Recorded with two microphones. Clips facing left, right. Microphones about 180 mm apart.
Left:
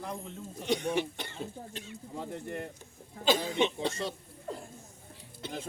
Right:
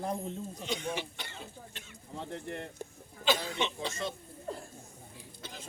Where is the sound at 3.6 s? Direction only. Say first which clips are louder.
Left 5 dB; 55° left (ahead or behind).